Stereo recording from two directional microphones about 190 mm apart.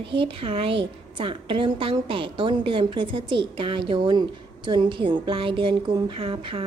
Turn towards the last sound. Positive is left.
turn(degrees=-30)  # may be behind; listen again after turning